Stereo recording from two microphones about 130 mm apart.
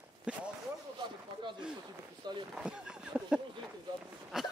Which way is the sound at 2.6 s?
5° right (ahead or behind).